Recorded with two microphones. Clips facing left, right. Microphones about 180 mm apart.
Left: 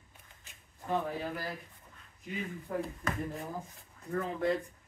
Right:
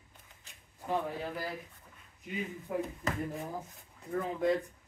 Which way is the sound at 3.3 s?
Centre (ahead or behind).